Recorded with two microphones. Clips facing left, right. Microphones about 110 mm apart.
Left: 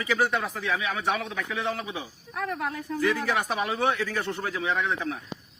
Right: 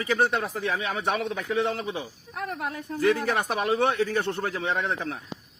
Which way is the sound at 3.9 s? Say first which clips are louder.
Right 5 dB; 25° right (ahead or behind).